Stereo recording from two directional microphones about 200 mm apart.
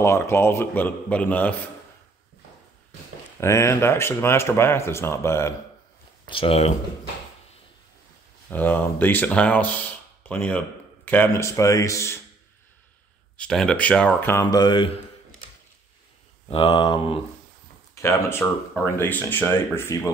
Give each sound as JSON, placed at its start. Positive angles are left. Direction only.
{"t": 0.0, "sound": "speech", "side_deg": 15}
{"t": 3.3, "sound": "speech", "side_deg": 15}
{"t": 6.2, "sound": "speech", "side_deg": 25}
{"t": 8.5, "sound": "speech", "side_deg": 10}
{"t": 13.4, "sound": "speech", "side_deg": 5}
{"t": 16.4, "sound": "speech", "side_deg": 25}
{"t": 17.9, "sound": "speech", "side_deg": 10}